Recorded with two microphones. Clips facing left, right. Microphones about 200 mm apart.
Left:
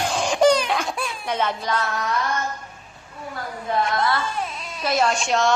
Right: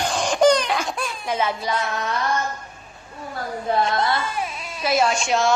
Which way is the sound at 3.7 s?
30° right (ahead or behind).